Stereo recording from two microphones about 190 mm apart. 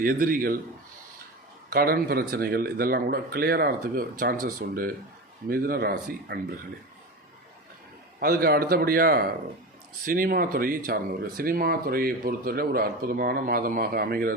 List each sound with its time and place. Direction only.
0.0 s speech: 50° right (ahead or behind)
1.7 s speech: 50° right (ahead or behind)
8.2 s speech: 55° right (ahead or behind)